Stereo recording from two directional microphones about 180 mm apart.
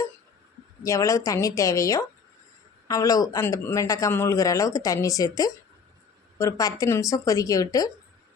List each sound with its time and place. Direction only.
0.9 s a man's voice: 20° left (ahead or behind)